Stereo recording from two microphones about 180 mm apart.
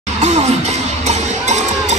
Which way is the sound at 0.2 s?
40° right (ahead or behind).